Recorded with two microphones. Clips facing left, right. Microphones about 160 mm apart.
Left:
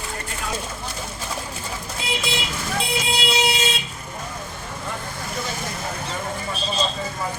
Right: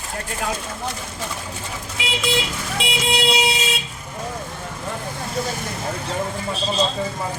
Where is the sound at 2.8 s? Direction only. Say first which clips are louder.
Right 3 dB; 90° right.